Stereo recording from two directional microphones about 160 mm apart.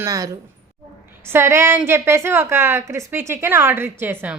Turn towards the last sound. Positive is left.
turn(degrees=-10)  # may be behind; listen again after turning